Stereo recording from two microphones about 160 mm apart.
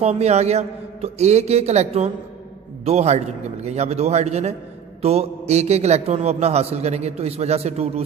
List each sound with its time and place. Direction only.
0.0 s a man's voice: 40° right (ahead or behind)